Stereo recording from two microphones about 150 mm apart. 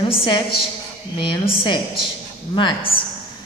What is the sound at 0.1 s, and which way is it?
A woman's voice, 35° left (ahead or behind).